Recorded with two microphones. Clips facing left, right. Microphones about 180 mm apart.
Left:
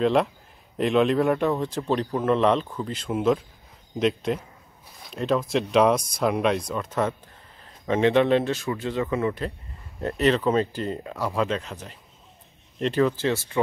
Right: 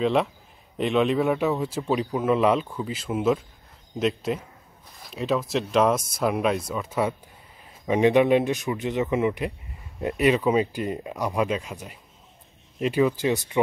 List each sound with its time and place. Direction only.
0.0 s speech: centre (ahead or behind)